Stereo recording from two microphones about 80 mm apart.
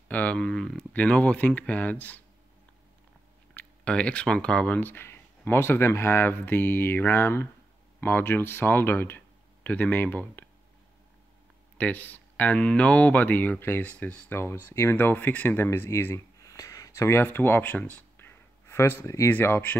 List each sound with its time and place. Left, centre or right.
0.1 s speech: centre
3.5 s speech: centre
11.8 s speech: left
14.3 s speech: left
16.3 s a sound: left
17.2 s speech: left
19.3 s speech: left